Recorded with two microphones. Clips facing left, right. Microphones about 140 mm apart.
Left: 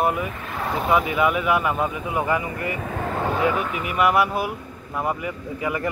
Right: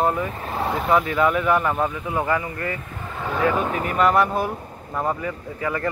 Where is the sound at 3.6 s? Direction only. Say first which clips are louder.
Right 3 dB; 35° right (ahead or behind).